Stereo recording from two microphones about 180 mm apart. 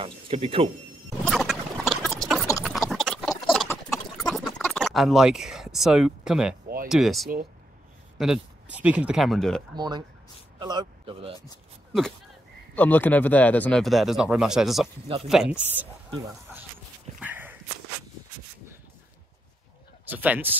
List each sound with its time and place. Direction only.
0.0 s speech: 30° right (ahead or behind)
1.2 s a sound: centre (ahead or behind)
2.6 s horse: centre (ahead or behind)
3.7 s a sound: centre (ahead or behind)
6.9 s speech: centre (ahead or behind)
9.8 s speech: 25° right (ahead or behind)
12.7 s speech: 10° left (ahead or behind); by 15.9 s 10° right (ahead or behind)
17.2 s walk: 10° right (ahead or behind)
20.1 s speech: 10° right (ahead or behind)